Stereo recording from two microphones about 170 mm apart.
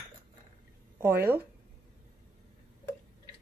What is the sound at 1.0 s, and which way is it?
Speech, 15° right (ahead or behind).